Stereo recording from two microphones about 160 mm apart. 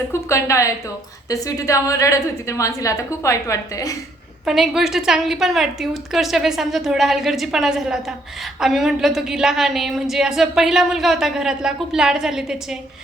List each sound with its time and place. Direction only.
0.1 s a woman's voice: 20° left (ahead or behind)
4.4 s a woman's voice: centre (ahead or behind)